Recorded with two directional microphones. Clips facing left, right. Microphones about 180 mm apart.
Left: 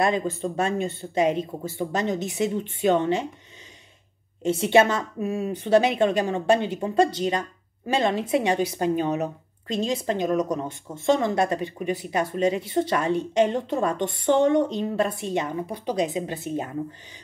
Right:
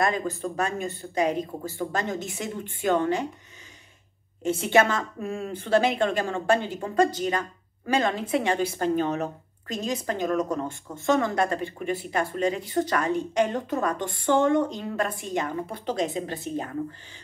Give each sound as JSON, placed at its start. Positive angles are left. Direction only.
{"t": 0.0, "sound": "a woman's voice", "side_deg": 20}
{"t": 4.4, "sound": "a woman's voice", "side_deg": 20}
{"t": 5.9, "sound": "a woman's voice", "side_deg": 15}